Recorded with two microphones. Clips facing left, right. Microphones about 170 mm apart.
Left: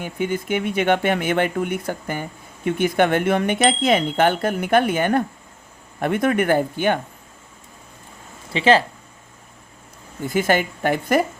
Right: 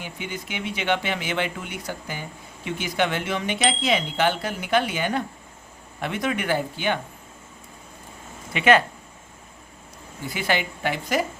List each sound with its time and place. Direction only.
0.0 s speech: 50° left (ahead or behind)
8.5 s speech: 30° left (ahead or behind)
10.2 s speech: 45° left (ahead or behind)